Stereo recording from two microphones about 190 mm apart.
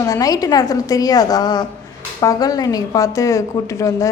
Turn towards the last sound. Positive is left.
turn(degrees=15)  # may be behind; listen again after turning